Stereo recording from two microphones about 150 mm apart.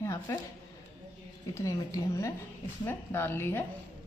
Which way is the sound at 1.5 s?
20° left (ahead or behind).